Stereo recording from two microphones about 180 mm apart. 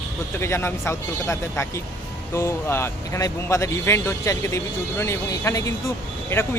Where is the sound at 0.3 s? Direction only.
15° left (ahead or behind).